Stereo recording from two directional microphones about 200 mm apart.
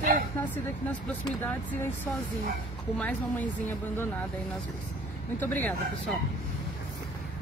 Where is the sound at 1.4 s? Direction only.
10° left (ahead or behind).